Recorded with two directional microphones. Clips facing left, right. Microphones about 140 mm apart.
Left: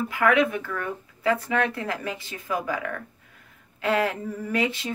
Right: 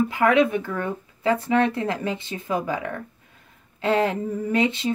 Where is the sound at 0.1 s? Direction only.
25° right (ahead or behind).